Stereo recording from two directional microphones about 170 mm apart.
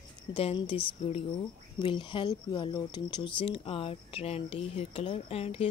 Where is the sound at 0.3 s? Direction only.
30° left (ahead or behind).